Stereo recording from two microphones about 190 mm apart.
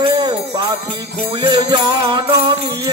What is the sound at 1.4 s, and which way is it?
Music, 25° right (ahead or behind).